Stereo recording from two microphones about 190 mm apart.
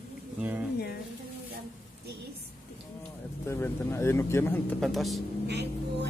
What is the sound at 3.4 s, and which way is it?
Speech, 15° left (ahead or behind).